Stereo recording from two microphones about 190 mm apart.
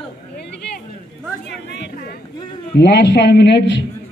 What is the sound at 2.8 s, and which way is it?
A man's voice, 65° left (ahead or behind).